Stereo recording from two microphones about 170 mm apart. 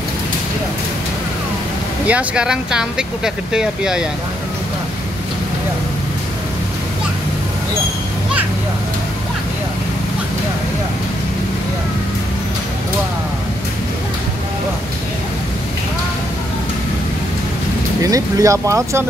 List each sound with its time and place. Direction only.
2.0 s speech: 5° right (ahead or behind)
18.0 s speech: 20° right (ahead or behind)